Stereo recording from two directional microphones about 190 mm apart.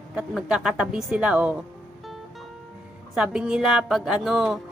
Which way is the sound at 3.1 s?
5° right (ahead or behind).